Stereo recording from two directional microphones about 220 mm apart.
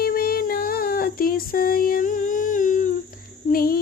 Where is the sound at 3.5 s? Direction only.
40° left (ahead or behind).